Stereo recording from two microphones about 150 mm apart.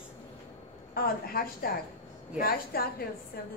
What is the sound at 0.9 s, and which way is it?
A woman's voice, 90° left.